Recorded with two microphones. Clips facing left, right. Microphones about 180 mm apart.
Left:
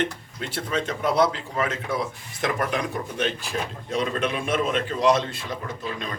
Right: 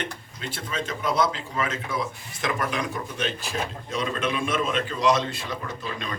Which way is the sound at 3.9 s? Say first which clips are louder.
Left 3 dB; 55° left (ahead or behind).